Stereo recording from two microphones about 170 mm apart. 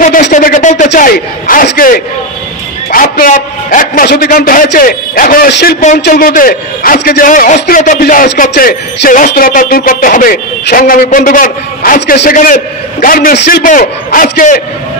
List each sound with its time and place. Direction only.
0.0 s a sound: 50° left (ahead or behind)
0.9 s a man's voice: 55° left (ahead or behind)
5.5 s a man's voice: 75° left (ahead or behind)
5.9 s a man's voice: 65° left (ahead or behind)